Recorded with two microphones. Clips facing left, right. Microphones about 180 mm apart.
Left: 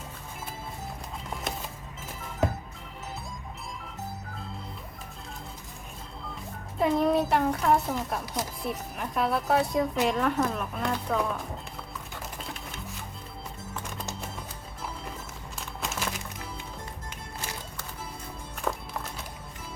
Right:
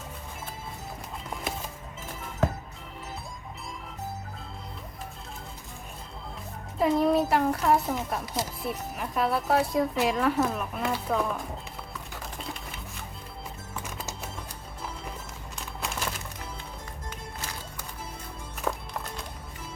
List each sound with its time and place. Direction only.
6.7 s a child's voice: centre (ahead or behind)
13.7 s music: 5° right (ahead or behind)
15.5 s crumpling: centre (ahead or behind)
18.6 s music: centre (ahead or behind)